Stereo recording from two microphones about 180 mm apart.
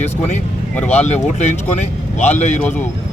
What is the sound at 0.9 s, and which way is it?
Speech, 40° left (ahead or behind).